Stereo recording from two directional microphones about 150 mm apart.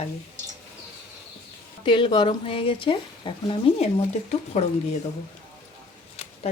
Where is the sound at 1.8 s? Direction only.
35° left (ahead or behind).